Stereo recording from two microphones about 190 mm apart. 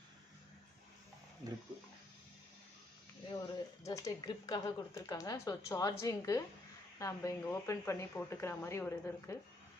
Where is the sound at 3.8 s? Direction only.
20° left (ahead or behind).